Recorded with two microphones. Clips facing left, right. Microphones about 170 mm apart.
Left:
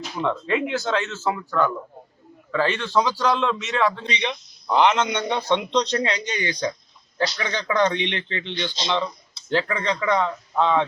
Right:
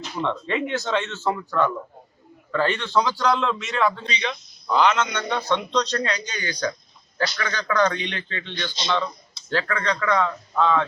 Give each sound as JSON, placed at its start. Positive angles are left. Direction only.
{"t": 0.2, "sound": "speech", "side_deg": 5}
{"t": 4.0, "sound": "speech", "side_deg": 20}